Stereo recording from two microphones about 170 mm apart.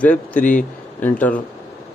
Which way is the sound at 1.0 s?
10° left (ahead or behind).